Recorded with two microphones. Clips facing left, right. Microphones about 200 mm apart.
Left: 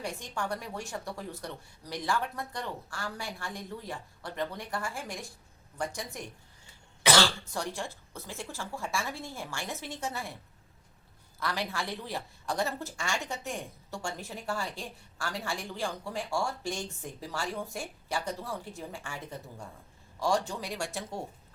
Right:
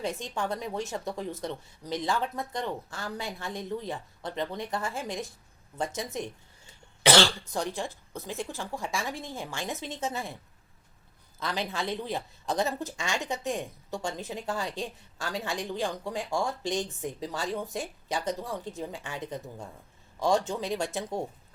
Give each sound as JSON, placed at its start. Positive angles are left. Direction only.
{"t": 0.0, "sound": "speech", "side_deg": -20}
{"t": 7.5, "sound": "a woman's voice", "side_deg": -20}
{"t": 11.3, "sound": "speech", "side_deg": -20}